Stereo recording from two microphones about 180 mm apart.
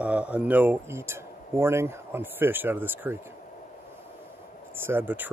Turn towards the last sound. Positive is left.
turn(degrees=-10)  # may be behind; listen again after turning